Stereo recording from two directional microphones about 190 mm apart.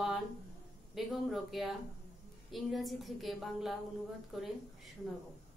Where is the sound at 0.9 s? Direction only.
Centre (ahead or behind).